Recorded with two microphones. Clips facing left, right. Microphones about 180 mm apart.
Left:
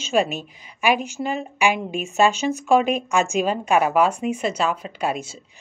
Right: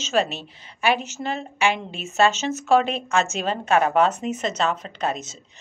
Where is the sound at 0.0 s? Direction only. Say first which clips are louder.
Left 2 dB; 10° left (ahead or behind).